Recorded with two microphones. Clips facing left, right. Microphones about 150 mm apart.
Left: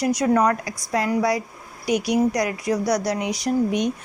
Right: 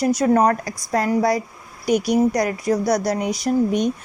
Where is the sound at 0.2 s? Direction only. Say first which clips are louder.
Right 2 dB; 35° right (ahead or behind).